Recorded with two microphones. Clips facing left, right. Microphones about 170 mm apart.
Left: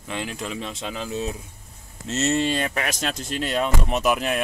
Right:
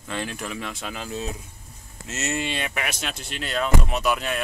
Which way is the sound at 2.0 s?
30° left (ahead or behind).